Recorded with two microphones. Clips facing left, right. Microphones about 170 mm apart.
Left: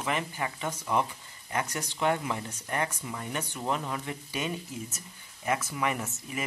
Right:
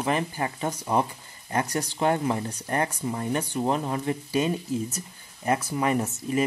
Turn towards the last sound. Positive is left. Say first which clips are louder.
# right 10 dB
turn(degrees=-35)  # may be behind; listen again after turning